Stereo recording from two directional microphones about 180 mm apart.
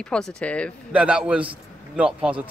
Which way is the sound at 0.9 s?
5° right (ahead or behind).